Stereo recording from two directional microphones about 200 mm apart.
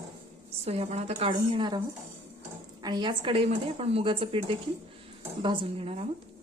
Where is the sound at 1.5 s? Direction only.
20° right (ahead or behind).